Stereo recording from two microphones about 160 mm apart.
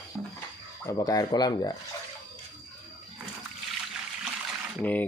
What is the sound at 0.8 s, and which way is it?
Speech, 20° left (ahead or behind).